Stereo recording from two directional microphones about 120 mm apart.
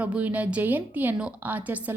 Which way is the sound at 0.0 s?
10° right (ahead or behind).